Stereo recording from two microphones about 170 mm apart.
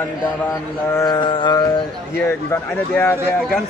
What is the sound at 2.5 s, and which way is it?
Speech, 10° left (ahead or behind).